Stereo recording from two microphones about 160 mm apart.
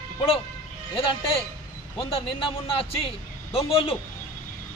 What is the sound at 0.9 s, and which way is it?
A man's voice, 35° left (ahead or behind).